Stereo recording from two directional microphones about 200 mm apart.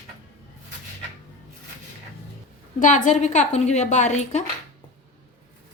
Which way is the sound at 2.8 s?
40° left (ahead or behind).